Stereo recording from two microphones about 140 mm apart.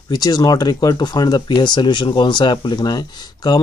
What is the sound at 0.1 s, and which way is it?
Speech, 30° left (ahead or behind).